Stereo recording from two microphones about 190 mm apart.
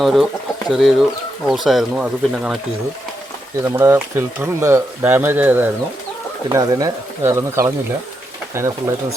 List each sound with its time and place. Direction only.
0.0 s speech: centre (ahead or behind)
3.6 s speech: 15° right (ahead or behind)